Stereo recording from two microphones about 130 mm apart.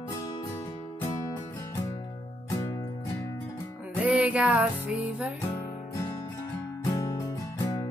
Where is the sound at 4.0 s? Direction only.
10° right (ahead or behind).